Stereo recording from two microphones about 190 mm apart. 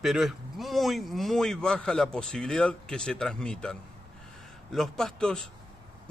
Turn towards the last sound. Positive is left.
turn(degrees=5)  # may be behind; listen again after turning